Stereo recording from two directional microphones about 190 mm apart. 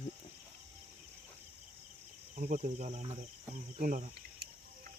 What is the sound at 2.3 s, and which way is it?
Speech, 40° right (ahead or behind).